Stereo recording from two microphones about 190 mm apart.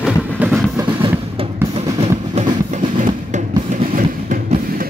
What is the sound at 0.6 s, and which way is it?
Train, 10° right (ahead or behind).